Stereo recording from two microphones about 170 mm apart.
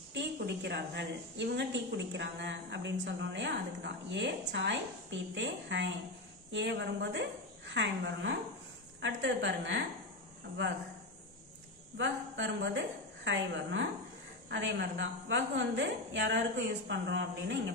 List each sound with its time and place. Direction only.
0.1 s speech: 90° right
12.0 s a woman's voice: 90° right